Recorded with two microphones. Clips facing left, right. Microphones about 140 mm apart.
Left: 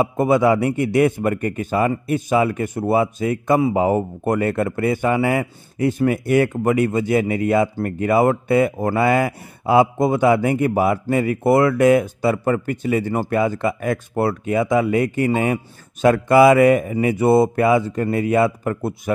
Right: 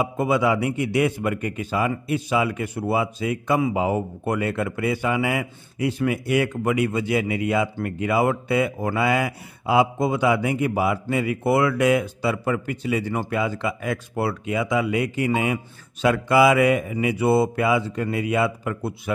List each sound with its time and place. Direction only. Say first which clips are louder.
0.0 s a man's voice: left 5 dB; 50° left (ahead or behind)